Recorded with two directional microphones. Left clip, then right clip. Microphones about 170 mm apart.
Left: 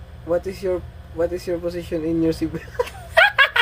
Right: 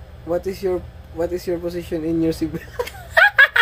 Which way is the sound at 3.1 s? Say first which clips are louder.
Right 2 dB; 5° right (ahead or behind).